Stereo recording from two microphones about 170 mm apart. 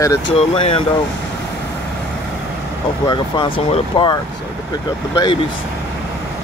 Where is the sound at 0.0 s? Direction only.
20° left (ahead or behind).